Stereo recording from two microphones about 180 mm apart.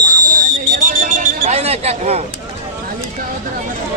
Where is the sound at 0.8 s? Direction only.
45° right (ahead or behind).